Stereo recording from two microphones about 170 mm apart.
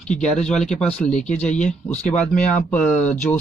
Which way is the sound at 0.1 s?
5° left (ahead or behind).